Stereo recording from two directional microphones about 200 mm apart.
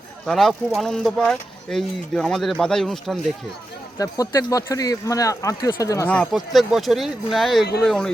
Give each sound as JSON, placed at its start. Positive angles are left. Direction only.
{"t": 0.3, "sound": "speech", "side_deg": 0}
{"t": 3.9, "sound": "speech", "side_deg": 15}